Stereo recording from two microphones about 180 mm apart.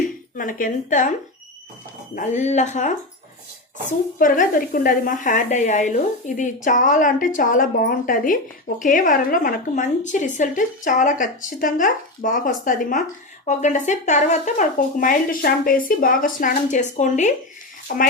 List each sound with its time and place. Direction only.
0.3 s speech: 50° left (ahead or behind)
2.1 s speech: 40° left (ahead or behind)
17.8 s speech: 50° left (ahead or behind)